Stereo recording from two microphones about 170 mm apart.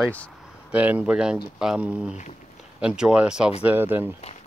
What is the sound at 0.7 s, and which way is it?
Speech, 10° right (ahead or behind).